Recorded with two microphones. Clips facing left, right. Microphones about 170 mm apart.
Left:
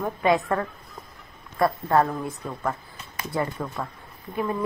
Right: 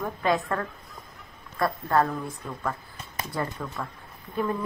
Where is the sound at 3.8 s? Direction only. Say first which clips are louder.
Left 1 dB; 30° left (ahead or behind).